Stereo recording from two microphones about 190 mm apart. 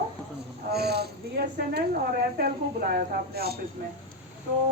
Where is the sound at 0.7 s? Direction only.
60° right (ahead or behind).